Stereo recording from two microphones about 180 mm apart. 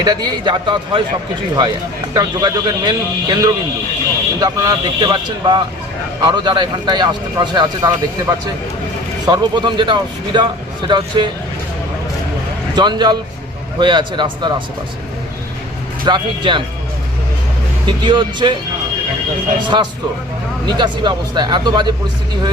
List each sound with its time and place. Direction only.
0.0 s speech: 20° right (ahead or behind)
2.1 s speech: 20° right (ahead or behind)
12.7 s speech: 25° right (ahead or behind)
16.0 s speech: 25° right (ahead or behind)
17.8 s speech: 25° right (ahead or behind)
19.6 s speech: 25° right (ahead or behind)